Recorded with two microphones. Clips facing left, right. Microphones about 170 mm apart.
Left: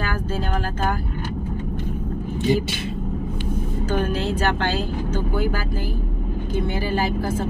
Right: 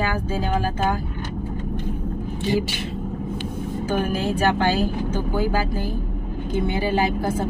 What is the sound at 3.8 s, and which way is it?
Speech, 10° right (ahead or behind).